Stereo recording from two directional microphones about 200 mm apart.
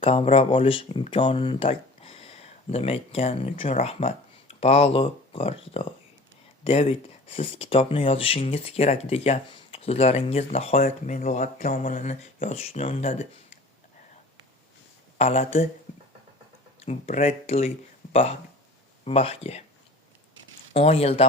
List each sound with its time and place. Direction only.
0.0 s speech: 30° left (ahead or behind)
15.2 s speech: 30° left (ahead or behind)
16.8 s speech: 35° left (ahead or behind)
20.7 s speech: 30° left (ahead or behind)